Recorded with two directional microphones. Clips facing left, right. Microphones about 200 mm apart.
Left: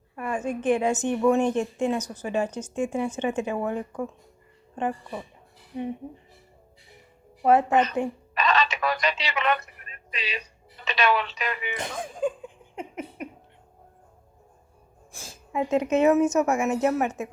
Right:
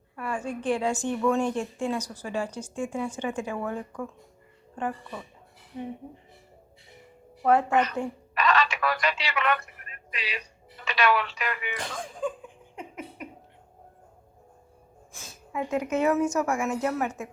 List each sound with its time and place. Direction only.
0.2 s a woman's voice: 20° left (ahead or behind)
7.4 s speech: 20° left (ahead or behind)
15.2 s a woman's voice: 25° left (ahead or behind)